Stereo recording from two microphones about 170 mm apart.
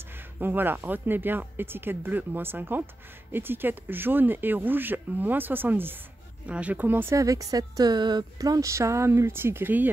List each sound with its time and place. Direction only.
0.4 s speech: 10° right (ahead or behind)